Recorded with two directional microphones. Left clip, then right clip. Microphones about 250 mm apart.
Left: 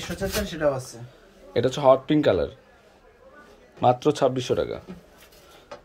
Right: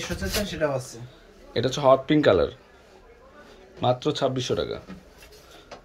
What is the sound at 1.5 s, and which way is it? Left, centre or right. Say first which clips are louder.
Speech: left 1 dB; centre.